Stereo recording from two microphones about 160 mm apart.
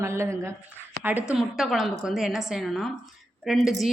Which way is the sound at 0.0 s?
15° right (ahead or behind).